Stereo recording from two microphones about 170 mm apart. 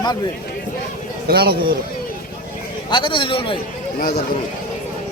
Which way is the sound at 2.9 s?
30° left (ahead or behind).